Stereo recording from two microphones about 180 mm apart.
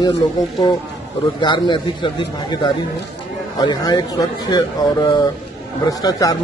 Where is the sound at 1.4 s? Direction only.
25° left (ahead or behind).